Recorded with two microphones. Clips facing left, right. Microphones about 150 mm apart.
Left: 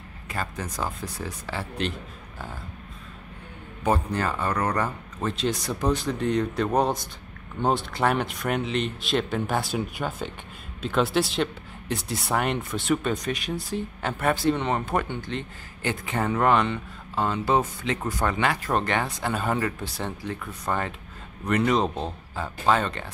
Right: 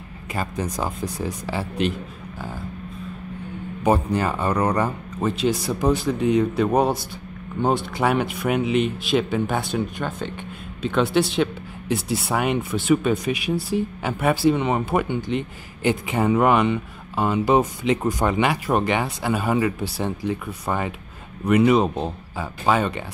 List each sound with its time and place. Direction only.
0.3 s speech: 15° right (ahead or behind)
3.8 s speech: 10° right (ahead or behind)